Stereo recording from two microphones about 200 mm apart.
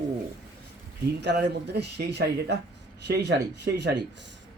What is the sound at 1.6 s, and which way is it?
Speech, 55° right (ahead or behind).